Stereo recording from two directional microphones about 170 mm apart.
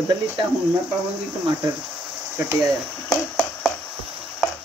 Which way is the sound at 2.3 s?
15° right (ahead or behind).